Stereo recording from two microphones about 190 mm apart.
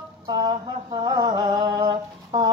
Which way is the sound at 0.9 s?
20° right (ahead or behind).